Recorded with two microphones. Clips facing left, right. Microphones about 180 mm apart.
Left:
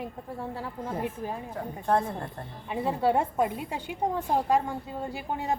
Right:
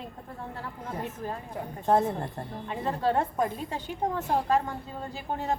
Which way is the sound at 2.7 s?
10° left (ahead or behind).